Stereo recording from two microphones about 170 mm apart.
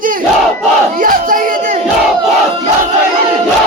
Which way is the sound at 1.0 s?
55° right (ahead or behind).